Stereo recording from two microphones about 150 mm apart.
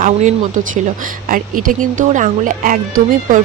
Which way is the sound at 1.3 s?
65° right (ahead or behind).